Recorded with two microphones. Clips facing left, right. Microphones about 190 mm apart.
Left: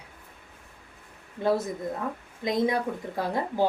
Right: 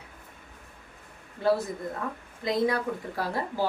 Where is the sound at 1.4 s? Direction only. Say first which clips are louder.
Even; 20° left (ahead or behind).